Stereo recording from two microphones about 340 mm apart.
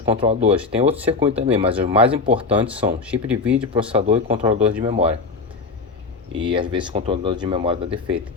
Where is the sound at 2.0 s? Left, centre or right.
Centre.